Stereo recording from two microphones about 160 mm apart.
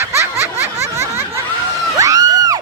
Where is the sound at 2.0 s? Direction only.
20° right (ahead or behind).